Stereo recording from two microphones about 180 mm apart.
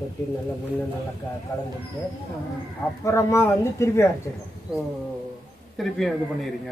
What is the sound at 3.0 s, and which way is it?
Speech, 15° left (ahead or behind).